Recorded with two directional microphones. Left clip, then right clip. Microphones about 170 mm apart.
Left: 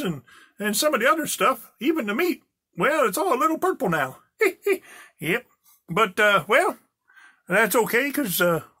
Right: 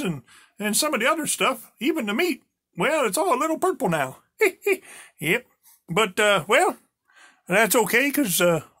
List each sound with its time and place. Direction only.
0.0 s speech: 15° right (ahead or behind)